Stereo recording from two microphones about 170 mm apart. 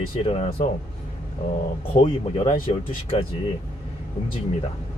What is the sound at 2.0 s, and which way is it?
Speech, 30° left (ahead or behind).